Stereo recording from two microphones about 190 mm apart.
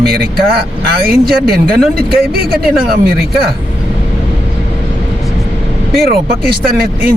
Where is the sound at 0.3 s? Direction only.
55° right (ahead or behind).